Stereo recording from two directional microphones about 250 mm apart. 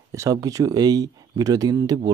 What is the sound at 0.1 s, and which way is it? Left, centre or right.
Speech, centre.